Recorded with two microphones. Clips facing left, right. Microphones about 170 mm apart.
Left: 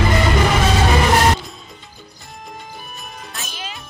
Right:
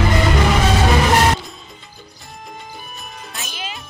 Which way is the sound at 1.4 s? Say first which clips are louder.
Even; centre (ahead or behind).